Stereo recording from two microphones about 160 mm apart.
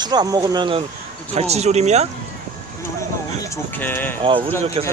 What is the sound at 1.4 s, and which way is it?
Speech, 40° right (ahead or behind).